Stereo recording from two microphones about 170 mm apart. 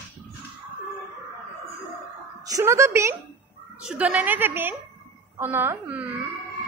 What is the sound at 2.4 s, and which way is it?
A woman's voice, 20° right (ahead or behind).